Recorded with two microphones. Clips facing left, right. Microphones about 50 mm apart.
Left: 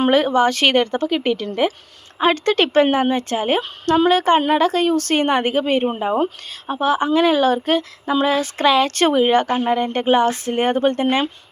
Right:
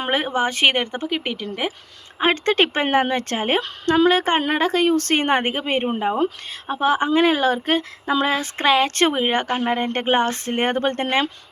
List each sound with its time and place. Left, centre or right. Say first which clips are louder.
0.1 s speech: left 6 dB; right
2.2 s speech: left 2 dB; right
2.9 s a woman's voice: left 1 dB; right